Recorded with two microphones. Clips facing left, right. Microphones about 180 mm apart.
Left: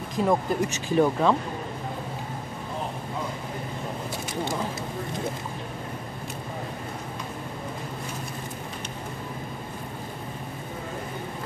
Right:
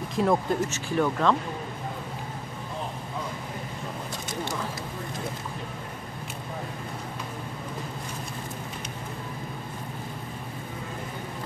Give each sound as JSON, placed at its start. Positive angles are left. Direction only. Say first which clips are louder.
{"t": 0.1, "sound": "speech", "louder": "even", "side_deg": 0}
{"t": 0.6, "sound": "speech", "louder": "left 4 dB", "side_deg": 15}